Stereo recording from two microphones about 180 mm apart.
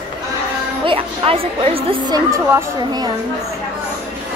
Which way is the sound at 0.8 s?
30° right (ahead or behind).